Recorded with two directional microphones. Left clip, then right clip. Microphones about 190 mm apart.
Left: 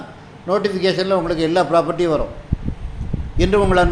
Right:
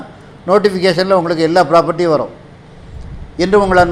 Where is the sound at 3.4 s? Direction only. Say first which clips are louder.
Right 5 dB; 20° right (ahead or behind).